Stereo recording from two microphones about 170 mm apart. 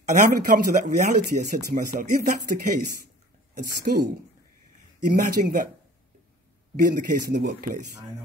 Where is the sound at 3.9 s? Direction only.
55° right (ahead or behind).